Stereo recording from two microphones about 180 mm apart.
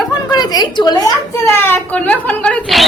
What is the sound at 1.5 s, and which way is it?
Speech, 10° left (ahead or behind).